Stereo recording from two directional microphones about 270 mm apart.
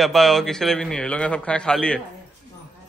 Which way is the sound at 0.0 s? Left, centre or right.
Centre.